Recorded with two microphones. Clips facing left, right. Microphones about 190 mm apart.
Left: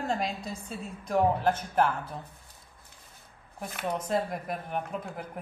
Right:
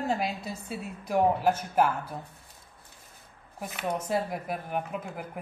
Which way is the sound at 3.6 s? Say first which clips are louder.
Right 1 dB; 10° right (ahead or behind).